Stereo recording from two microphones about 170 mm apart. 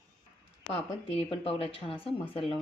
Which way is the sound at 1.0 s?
35° left (ahead or behind).